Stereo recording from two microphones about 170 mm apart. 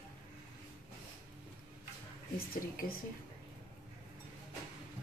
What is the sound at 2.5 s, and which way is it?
Speech, 60° left (ahead or behind).